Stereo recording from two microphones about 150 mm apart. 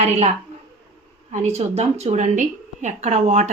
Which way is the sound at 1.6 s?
45° right (ahead or behind).